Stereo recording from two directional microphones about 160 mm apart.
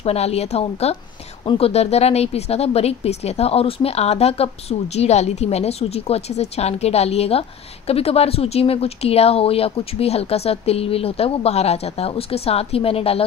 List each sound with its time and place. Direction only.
0.0 s speech: 40° left (ahead or behind)